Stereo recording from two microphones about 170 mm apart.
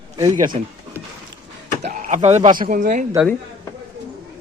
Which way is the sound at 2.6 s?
50° right (ahead or behind).